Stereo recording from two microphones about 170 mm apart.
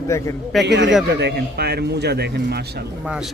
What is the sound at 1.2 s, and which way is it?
A man's voice, 75° right (ahead or behind).